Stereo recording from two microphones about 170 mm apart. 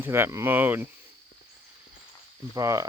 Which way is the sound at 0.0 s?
15° right (ahead or behind).